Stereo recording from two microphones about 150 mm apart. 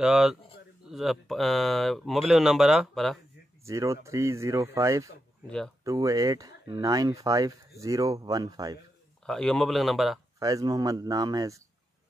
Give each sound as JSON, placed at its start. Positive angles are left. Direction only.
{"t": 0.0, "sound": "speech", "side_deg": 0}
{"t": 3.6, "sound": "speech", "side_deg": -20}
{"t": 9.2, "sound": "speech", "side_deg": 5}
{"t": 10.4, "sound": "speech", "side_deg": -25}